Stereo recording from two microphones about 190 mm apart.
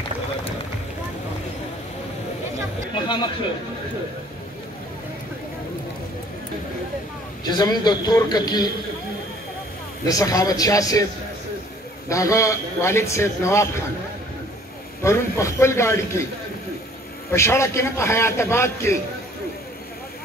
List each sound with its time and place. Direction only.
2.9 s a sound: 25° left (ahead or behind)
7.4 s a man's voice: 20° left (ahead or behind)
10.0 s a man's voice: 20° left (ahead or behind)
12.1 s a man's voice: 15° left (ahead or behind)
15.0 s a man's voice: 15° left (ahead or behind)
17.3 s a man's voice: 15° left (ahead or behind)